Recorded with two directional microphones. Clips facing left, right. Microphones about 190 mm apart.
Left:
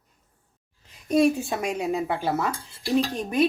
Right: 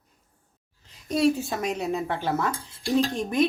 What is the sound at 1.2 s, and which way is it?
Speech, 15° left (ahead or behind).